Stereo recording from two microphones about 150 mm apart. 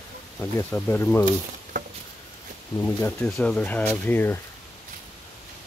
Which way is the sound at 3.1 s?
5° left (ahead or behind).